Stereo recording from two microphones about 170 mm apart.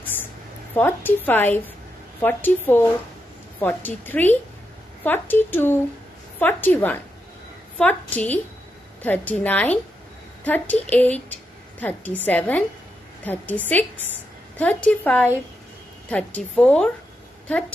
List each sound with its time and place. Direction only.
0.7 s speech: 10° left (ahead or behind)